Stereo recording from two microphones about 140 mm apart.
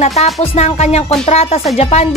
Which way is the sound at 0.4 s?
50° left (ahead or behind).